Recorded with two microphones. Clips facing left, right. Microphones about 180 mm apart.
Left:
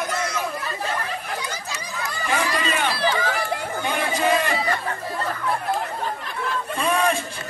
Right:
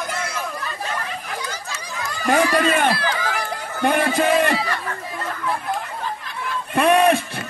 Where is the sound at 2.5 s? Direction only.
55° right (ahead or behind).